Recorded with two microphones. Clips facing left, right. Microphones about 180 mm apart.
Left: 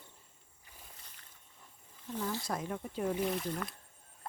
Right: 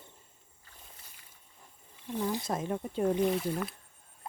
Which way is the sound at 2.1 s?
15° right (ahead or behind).